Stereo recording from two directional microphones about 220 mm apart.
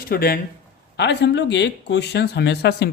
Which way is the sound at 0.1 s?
45° left (ahead or behind).